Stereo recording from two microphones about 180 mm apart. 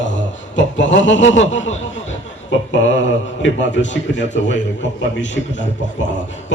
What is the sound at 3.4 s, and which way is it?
A man's voice, 90° left.